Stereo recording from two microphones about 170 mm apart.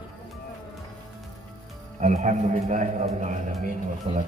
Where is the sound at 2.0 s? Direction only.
45° right (ahead or behind).